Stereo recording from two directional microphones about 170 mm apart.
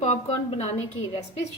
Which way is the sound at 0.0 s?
40° left (ahead or behind).